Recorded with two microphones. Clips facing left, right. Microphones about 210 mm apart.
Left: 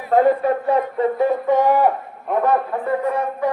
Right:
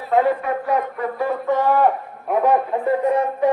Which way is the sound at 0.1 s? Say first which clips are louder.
Left 3 dB; 40° left (ahead or behind).